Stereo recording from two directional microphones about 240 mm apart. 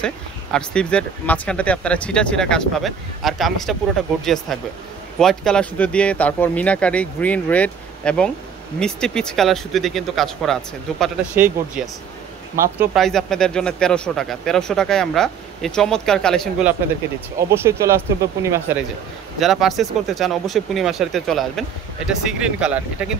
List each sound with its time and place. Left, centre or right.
0.0 s speech: centre
17.4 s speech: centre
19.4 s speech: centre